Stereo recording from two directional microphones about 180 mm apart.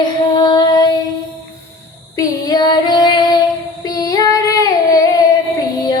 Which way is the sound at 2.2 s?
20° left (ahead or behind).